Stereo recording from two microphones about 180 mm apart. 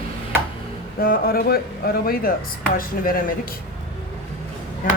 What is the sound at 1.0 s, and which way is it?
Speech, 55° left (ahead or behind).